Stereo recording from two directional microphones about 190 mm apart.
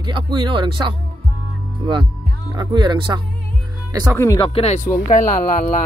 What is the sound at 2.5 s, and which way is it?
Speech, 20° right (ahead or behind).